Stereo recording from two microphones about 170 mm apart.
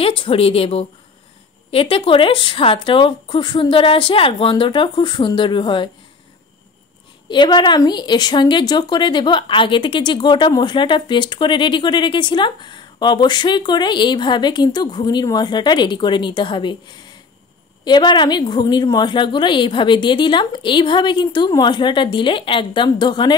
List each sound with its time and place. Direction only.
0.2 s a woman's voice: 35° left (ahead or behind)
7.2 s a woman's voice: 25° left (ahead or behind)